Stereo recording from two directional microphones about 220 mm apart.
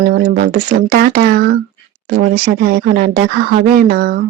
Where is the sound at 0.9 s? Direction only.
45° right (ahead or behind).